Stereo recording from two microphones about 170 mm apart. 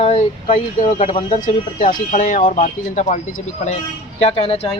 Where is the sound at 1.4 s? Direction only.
45° left (ahead or behind).